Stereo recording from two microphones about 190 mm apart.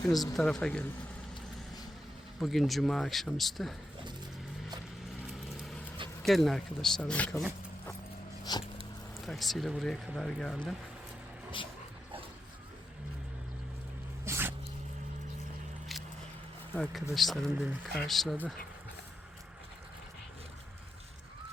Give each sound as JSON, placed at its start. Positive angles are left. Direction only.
{"t": 0.1, "sound": "speech", "side_deg": 0}
{"t": 2.4, "sound": "speech", "side_deg": 0}
{"t": 6.2, "sound": "speech", "side_deg": 0}
{"t": 8.5, "sound": "dog", "side_deg": 20}
{"t": 9.2, "sound": "speech", "side_deg": 0}
{"t": 14.3, "sound": "a sound", "side_deg": -10}
{"t": 16.7, "sound": "speech", "side_deg": 0}